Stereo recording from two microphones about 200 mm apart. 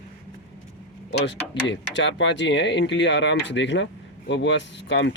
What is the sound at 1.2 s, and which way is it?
Speech, 60° left (ahead or behind).